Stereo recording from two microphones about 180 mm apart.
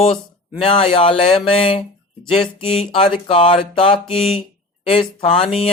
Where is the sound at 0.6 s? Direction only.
30° left (ahead or behind).